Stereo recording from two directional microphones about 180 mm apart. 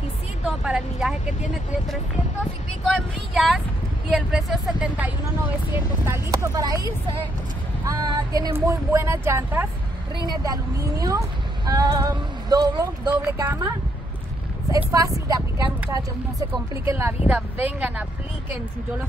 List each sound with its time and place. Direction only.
0.5 s speech: centre (ahead or behind)
2.8 s speech: centre (ahead or behind); by 6.9 s 20° right (ahead or behind)
7.9 s speech: 20° right (ahead or behind)
14.9 s speech: 20° right (ahead or behind)